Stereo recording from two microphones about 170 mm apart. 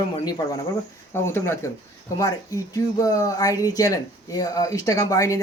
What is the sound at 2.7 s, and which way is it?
Speech, 20° left (ahead or behind).